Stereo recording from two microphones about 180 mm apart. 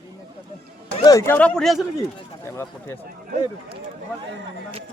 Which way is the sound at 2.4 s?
15° left (ahead or behind).